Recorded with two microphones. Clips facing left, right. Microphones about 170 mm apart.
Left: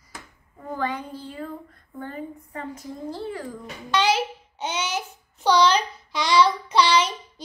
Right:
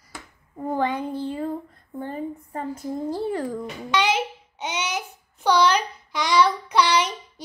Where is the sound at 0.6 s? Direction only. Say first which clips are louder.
Right 5 dB; 25° right (ahead or behind).